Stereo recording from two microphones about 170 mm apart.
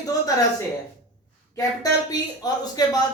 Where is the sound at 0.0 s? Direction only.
20° left (ahead or behind).